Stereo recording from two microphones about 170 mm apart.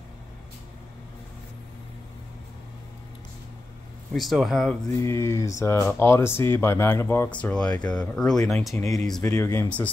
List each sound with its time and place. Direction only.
4.1 s speech: centre (ahead or behind)
4.9 s speech: 15° left (ahead or behind); by 8.7 s centre (ahead or behind)
8.7 s speech: 20° left (ahead or behind)